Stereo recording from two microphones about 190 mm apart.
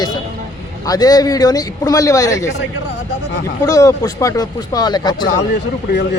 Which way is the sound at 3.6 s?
20° left (ahead or behind).